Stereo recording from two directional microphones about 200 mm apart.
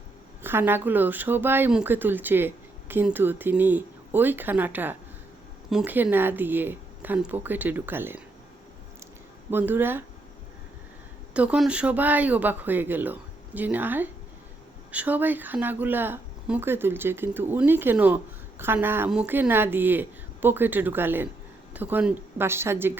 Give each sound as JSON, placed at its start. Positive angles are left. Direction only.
{"t": 0.4, "sound": "speech", "side_deg": -10}
{"t": 9.5, "sound": "speech", "side_deg": -10}
{"t": 11.3, "sound": "speech", "side_deg": -5}